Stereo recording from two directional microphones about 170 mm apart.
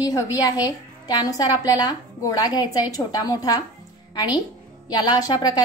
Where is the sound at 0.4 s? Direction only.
20° left (ahead or behind).